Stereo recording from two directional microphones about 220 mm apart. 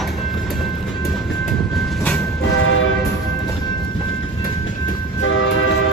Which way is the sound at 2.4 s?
60° left (ahead or behind).